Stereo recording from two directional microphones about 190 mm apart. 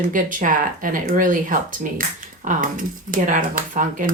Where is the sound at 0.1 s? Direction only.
45° right (ahead or behind).